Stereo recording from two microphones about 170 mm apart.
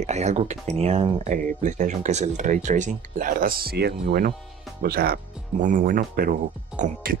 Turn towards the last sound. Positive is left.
turn(degrees=-55)  # may be behind; listen again after turning